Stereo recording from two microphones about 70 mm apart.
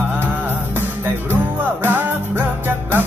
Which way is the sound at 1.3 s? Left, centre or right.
Right.